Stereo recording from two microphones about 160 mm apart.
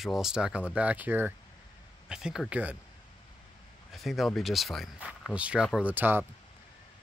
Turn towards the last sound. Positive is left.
turn(degrees=-10)  # may be behind; listen again after turning